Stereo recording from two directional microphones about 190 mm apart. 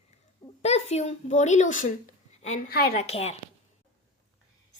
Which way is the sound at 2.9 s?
35° left (ahead or behind).